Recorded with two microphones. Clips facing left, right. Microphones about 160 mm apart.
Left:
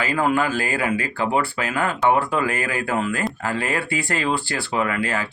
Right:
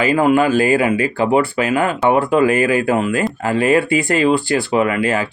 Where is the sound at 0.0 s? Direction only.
15° right (ahead or behind).